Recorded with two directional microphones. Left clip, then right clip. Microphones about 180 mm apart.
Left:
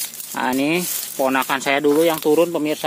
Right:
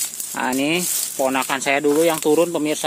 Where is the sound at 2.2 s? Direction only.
Centre (ahead or behind).